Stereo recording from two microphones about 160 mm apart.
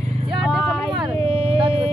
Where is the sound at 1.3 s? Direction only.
35° right (ahead or behind).